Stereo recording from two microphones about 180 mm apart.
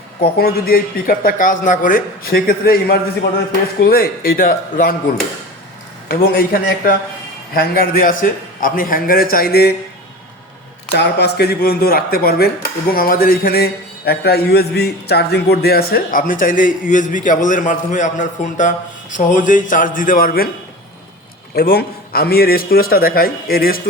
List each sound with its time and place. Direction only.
0.3 s a man's voice: 60° left (ahead or behind)
6.1 s a man's voice: 55° left (ahead or behind)
10.9 s a man's voice: 65° left (ahead or behind)
21.5 s a man's voice: 60° left (ahead or behind)